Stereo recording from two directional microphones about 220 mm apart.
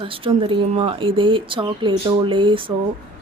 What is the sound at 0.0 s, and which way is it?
Speech, 25° right (ahead or behind).